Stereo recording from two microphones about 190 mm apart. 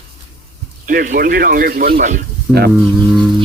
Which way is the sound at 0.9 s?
45° right (ahead or behind).